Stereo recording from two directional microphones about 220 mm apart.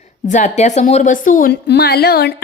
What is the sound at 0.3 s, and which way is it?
A woman's voice, 35° left (ahead or behind).